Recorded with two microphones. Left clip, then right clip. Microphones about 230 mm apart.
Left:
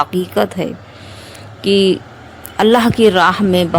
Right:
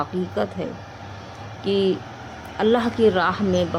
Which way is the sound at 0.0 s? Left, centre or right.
Left.